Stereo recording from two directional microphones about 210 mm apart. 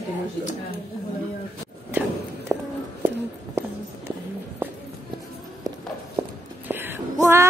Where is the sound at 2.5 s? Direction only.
15° right (ahead or behind).